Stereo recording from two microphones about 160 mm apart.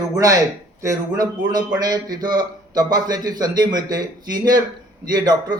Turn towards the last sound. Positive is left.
turn(degrees=-25)  # may be behind; listen again after turning